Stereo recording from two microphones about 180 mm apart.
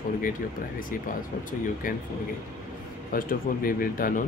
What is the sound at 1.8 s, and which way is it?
Speech, 50° left (ahead or behind).